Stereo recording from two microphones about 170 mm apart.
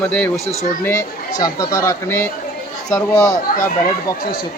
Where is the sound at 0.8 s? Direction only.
20° left (ahead or behind).